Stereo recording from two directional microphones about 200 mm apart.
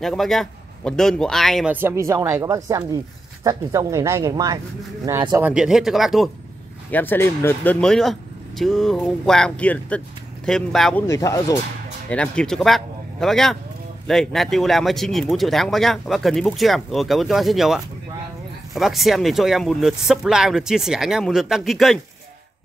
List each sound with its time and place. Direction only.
0.0 s a woman's voice: centre (ahead or behind); by 5.5 s 15° right (ahead or behind)
5.5 s speech: 5° right (ahead or behind)
6.9 s speech: 10° left (ahead or behind)
11.1 s speech: 15° left (ahead or behind)
12.1 s speech: 5° left (ahead or behind)